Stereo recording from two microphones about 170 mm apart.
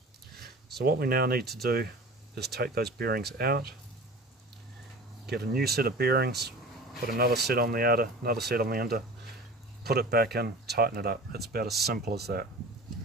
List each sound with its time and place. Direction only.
0.7 s speech: 65° right (ahead or behind)
5.2 s speech: 70° right (ahead or behind)